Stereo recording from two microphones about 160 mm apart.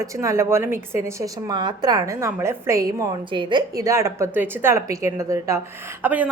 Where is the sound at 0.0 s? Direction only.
20° right (ahead or behind).